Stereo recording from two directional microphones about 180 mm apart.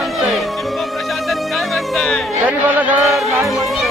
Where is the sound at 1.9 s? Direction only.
5° left (ahead or behind).